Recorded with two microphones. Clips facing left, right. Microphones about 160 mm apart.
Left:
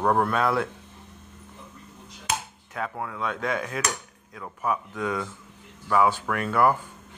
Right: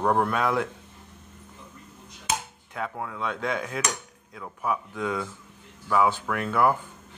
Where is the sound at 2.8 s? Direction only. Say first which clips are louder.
Left 1 dB; 10° right (ahead or behind).